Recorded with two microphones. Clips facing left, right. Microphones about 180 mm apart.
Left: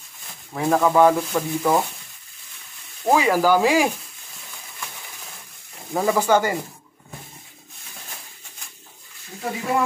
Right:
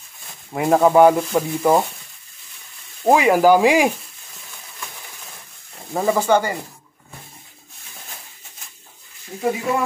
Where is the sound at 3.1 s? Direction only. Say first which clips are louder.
Right 4 dB; 15° right (ahead or behind).